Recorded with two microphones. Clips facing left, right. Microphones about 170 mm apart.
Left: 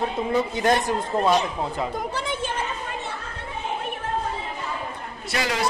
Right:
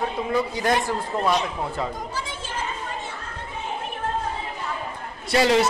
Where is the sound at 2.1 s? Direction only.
60° left (ahead or behind).